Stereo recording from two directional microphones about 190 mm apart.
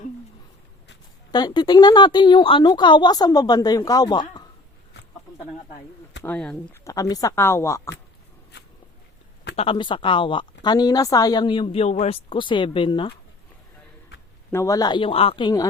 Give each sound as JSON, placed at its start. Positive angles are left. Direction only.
{"t": 1.3, "sound": "speech", "side_deg": 20}
{"t": 6.2, "sound": "speech", "side_deg": 5}
{"t": 6.8, "sound": "speech", "side_deg": 20}
{"t": 9.6, "sound": "speech", "side_deg": 25}
{"t": 14.5, "sound": "speech", "side_deg": 15}